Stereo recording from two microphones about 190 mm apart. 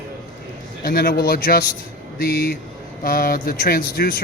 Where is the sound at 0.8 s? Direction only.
50° left (ahead or behind).